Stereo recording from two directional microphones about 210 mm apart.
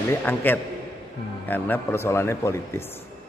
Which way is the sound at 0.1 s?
10° left (ahead or behind).